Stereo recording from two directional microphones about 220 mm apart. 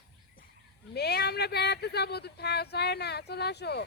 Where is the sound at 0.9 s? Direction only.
45° left (ahead or behind).